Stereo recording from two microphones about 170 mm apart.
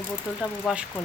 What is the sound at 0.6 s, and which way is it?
Speech, 5° right (ahead or behind).